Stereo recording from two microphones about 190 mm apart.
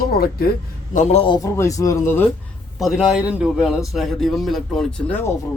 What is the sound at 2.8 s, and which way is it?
Speech, centre (ahead or behind).